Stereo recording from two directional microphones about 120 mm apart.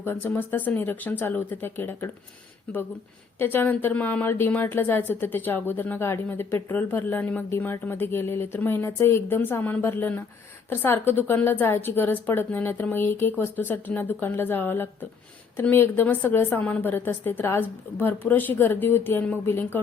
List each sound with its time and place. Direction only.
0.0 s a woman's voice: 15° left (ahead or behind)
3.3 s a woman's voice: 15° left (ahead or behind)